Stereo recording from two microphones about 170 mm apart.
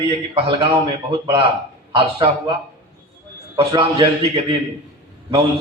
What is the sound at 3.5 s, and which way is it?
A man's voice, 25° right (ahead or behind).